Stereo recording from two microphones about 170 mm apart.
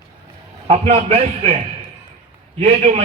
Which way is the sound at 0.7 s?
40° right (ahead or behind).